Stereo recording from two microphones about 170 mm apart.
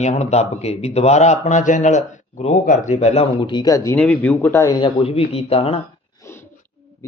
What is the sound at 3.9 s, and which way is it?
Speech, 5° left (ahead or behind).